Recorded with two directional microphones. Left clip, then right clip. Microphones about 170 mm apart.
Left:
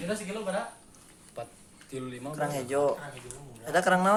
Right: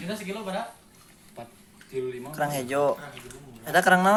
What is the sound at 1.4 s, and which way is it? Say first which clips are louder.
Speech: left 3 dB; 55° left (ahead or behind).